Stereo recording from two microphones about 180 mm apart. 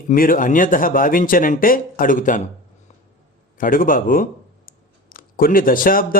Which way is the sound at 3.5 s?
50° left (ahead or behind).